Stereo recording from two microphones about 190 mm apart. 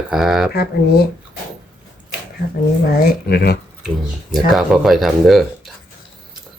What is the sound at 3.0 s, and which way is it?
Speech, 55° left (ahead or behind).